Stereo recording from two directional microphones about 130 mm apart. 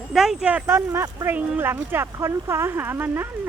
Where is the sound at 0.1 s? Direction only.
Centre (ahead or behind).